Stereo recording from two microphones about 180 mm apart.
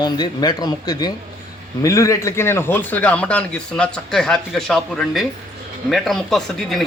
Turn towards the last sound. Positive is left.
turn(degrees=0)  # may be behind; listen again after turning